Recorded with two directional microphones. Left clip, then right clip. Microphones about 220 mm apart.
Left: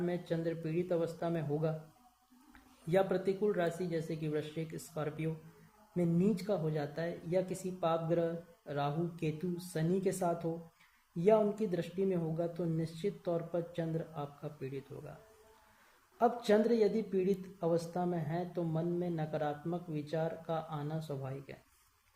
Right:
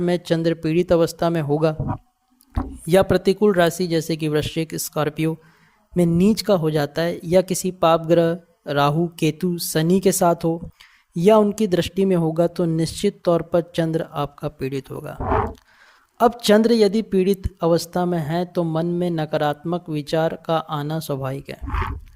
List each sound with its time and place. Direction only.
0.0 s speech: 45° right (ahead or behind)
2.9 s speech: 45° right (ahead or behind)
16.1 s speech: 45° right (ahead or behind)